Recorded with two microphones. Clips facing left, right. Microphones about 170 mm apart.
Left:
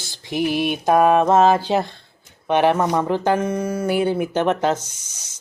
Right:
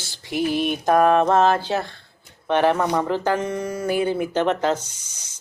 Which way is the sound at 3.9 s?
20° left (ahead or behind).